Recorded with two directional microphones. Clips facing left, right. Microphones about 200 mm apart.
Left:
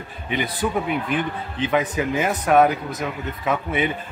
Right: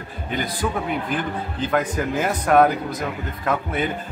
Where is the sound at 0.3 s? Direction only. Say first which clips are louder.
Left 1 dB; 5° left (ahead or behind).